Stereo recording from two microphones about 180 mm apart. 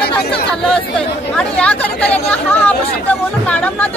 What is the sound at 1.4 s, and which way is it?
Chatter, 5° left (ahead or behind).